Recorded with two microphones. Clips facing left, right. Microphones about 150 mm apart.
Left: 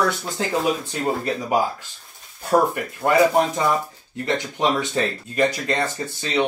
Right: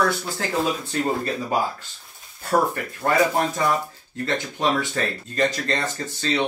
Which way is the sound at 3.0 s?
15° left (ahead or behind).